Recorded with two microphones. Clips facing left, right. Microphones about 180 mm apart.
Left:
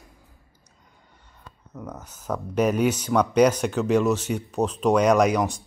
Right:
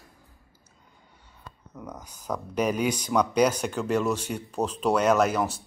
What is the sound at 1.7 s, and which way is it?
Speech, 10° left (ahead or behind).